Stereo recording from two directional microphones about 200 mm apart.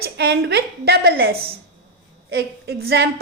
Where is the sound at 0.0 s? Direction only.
55° right (ahead or behind).